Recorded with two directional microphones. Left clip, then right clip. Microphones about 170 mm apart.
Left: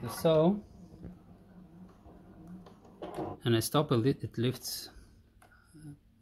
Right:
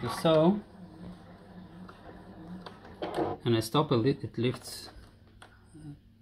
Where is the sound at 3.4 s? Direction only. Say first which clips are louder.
Left 1 dB; 55° left (ahead or behind).